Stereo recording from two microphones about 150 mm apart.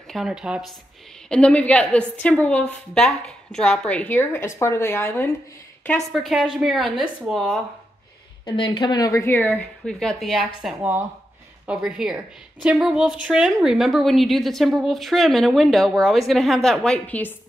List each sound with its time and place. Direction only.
0.1 s a woman's voice: 5° right (ahead or behind)
1.3 s a woman's voice: 10° left (ahead or behind)
5.9 s a woman's voice: centre (ahead or behind)
8.5 s a woman's voice: 30° left (ahead or behind); by 9.5 s 15° left (ahead or behind)
9.5 s a woman's voice: 5° left (ahead or behind)
10.8 s a woman's voice: 10° right (ahead or behind); by 17.4 s 10° left (ahead or behind)